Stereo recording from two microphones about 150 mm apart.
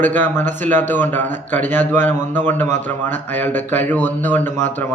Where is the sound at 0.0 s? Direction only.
10° left (ahead or behind).